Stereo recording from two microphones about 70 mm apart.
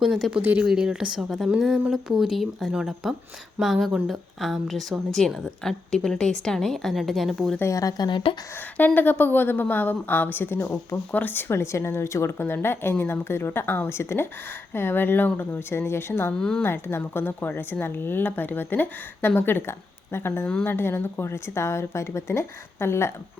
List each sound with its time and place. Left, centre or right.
0.0 s a woman's voice: centre
7.6 s speech: left
9.0 s a woman's voice: left
16.4 s speech: centre
16.6 s a woman's voice: left